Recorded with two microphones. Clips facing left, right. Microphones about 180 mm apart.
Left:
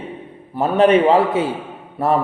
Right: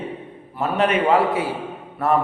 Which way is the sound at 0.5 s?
35° left (ahead or behind).